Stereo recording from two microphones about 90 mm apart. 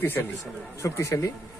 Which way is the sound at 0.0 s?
25° left (ahead or behind).